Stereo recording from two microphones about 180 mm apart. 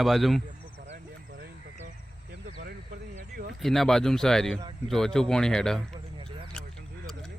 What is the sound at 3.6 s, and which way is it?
Speech, centre (ahead or behind).